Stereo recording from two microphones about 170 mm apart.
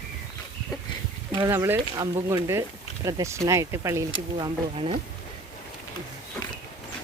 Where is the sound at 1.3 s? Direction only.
20° right (ahead or behind).